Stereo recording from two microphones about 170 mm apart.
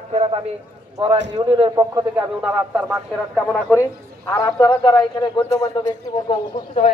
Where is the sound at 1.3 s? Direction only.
25° right (ahead or behind).